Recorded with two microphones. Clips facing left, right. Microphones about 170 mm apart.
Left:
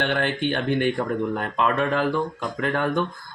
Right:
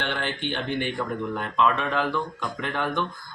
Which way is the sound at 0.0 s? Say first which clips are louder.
Left 6 dB; 50° left (ahead or behind).